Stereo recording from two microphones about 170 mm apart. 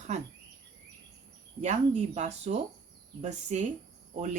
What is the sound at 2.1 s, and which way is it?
Speech, 40° right (ahead or behind).